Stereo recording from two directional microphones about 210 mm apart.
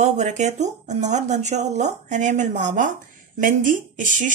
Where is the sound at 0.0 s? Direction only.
35° right (ahead or behind).